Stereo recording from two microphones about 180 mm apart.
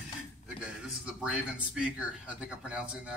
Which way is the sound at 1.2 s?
5° right (ahead or behind).